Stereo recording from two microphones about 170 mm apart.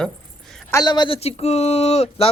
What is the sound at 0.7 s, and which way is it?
Speech, 25° left (ahead or behind).